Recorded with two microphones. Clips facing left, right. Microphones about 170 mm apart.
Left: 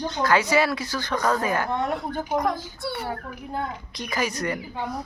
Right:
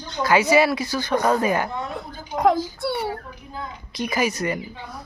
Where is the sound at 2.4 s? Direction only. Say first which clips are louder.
Right 9 dB; 60° right (ahead or behind).